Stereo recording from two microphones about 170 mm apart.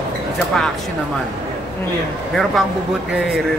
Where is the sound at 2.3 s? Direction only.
Centre (ahead or behind).